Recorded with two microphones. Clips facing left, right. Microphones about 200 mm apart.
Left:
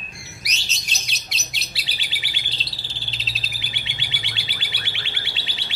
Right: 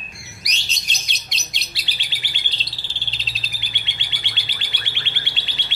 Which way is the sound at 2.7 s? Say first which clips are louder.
Left 1 dB; centre (ahead or behind).